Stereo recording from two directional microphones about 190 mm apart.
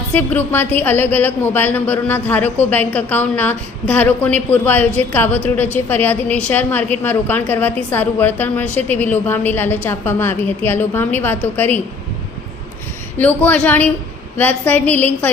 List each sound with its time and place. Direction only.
0.1 s a woman's voice: 10° left (ahead or behind)
13.1 s a woman's voice: 10° left (ahead or behind)